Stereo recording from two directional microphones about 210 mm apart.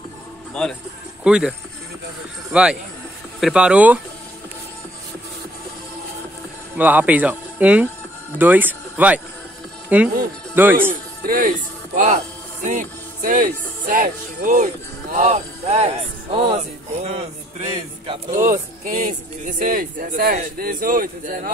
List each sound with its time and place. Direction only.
0.6 s speech: 5° left (ahead or behind)
2.5 s speech: 5° right (ahead or behind)
6.8 s speech: 5° right (ahead or behind)
10.9 s a man's voice: 45° right (ahead or behind)